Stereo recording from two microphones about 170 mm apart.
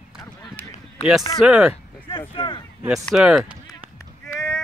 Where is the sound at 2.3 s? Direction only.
30° left (ahead or behind).